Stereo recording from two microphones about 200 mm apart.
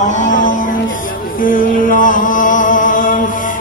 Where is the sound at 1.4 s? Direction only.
45° left (ahead or behind).